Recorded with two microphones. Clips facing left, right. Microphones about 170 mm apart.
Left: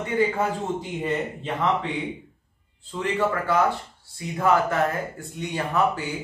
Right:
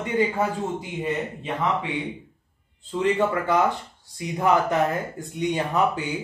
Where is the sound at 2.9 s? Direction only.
20° right (ahead or behind).